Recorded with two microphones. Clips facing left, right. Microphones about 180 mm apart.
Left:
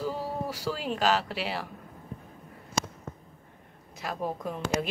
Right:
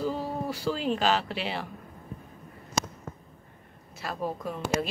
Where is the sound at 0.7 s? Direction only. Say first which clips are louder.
Right 1 dB; 5° left (ahead or behind).